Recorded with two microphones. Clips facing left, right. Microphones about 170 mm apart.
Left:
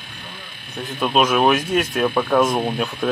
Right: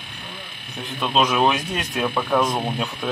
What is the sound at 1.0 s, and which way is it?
Speech, 10° left (ahead or behind).